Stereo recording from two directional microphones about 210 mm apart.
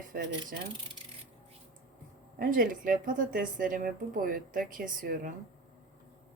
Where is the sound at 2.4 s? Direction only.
40° right (ahead or behind).